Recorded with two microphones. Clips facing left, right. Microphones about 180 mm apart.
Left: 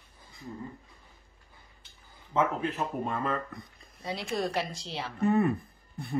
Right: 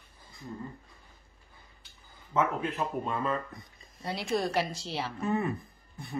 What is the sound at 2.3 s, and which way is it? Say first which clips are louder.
Speech: left 1 dB; 30° left (ahead or behind).